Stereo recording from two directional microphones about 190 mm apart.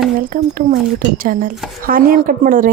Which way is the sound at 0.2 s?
45° right (ahead or behind).